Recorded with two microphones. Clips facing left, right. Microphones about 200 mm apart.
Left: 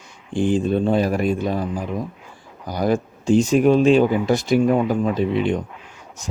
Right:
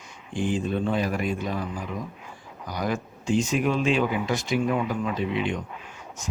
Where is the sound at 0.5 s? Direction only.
30° left (ahead or behind).